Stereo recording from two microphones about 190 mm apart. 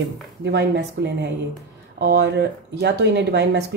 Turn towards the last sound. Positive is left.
turn(degrees=-65)  # may be behind; listen again after turning